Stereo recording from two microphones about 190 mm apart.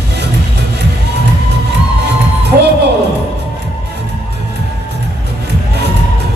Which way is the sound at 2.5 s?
50° right (ahead or behind).